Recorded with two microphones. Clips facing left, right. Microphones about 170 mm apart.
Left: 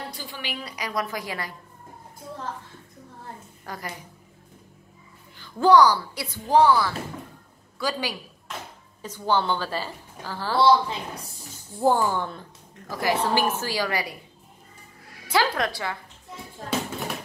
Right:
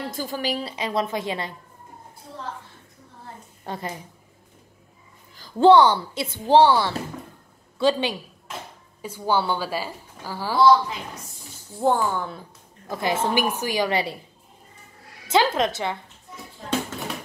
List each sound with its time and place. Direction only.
0.1 s speech: 45° right (ahead or behind); by 1.5 s 25° right (ahead or behind)
3.6 s a woman's voice: 25° right (ahead or behind)
5.4 s speech: 25° right (ahead or behind)
9.0 s a woman's voice: 10° right (ahead or behind)
10.6 s speech: 30° left (ahead or behind)
11.8 s speech: centre (ahead or behind)
12.9 s speech: 25° right (ahead or behind)
15.2 s speech: 20° right (ahead or behind)